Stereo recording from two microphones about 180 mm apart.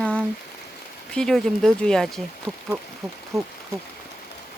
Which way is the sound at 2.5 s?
10° right (ahead or behind).